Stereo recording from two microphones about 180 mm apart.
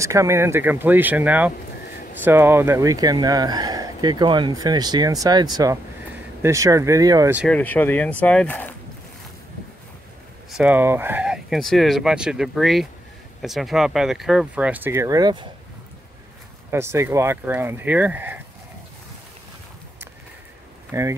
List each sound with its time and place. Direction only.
0.0 s speech: 15° right (ahead or behind)
7.4 s speech: 10° left (ahead or behind)
10.5 s speech: 10° right (ahead or behind)
16.7 s speech: 15° right (ahead or behind)
20.9 s speech: 15° right (ahead or behind)